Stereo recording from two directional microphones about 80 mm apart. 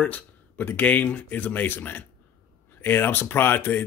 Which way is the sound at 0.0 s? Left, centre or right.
Left.